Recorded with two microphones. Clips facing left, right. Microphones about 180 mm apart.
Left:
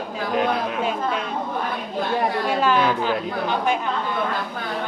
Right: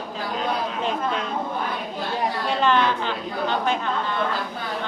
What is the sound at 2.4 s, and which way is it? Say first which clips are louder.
A woman's voice: right 1 dB; 10° left (ahead or behind).